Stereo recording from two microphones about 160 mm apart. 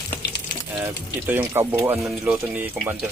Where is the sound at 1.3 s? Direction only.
15° right (ahead or behind).